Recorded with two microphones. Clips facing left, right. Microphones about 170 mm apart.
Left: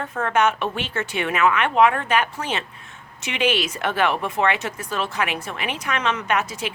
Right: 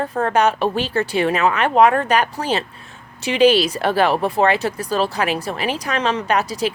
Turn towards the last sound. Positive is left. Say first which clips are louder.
# right 5 dB
turn(degrees=-35)  # may be behind; listen again after turning